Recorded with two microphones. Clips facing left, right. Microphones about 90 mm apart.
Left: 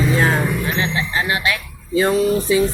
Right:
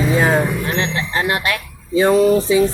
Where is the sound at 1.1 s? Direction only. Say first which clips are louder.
Right 2 dB; 55° right (ahead or behind).